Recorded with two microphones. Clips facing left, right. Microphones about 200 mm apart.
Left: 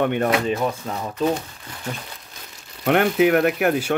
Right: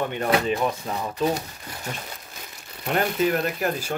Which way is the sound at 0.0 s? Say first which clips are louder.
Left 6 dB; 60° left (ahead or behind).